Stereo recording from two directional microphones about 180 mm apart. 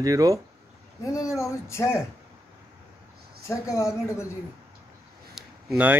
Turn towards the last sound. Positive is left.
turn(degrees=-5)  # may be behind; listen again after turning